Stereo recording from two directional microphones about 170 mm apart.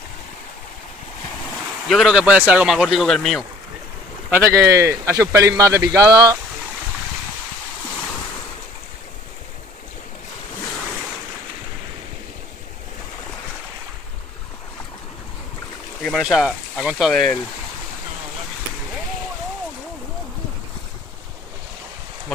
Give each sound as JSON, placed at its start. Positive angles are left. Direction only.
{"t": 1.9, "sound": "speech", "side_deg": 0}
{"t": 4.3, "sound": "a man's voice", "side_deg": -15}
{"t": 16.0, "sound": "speech", "side_deg": 0}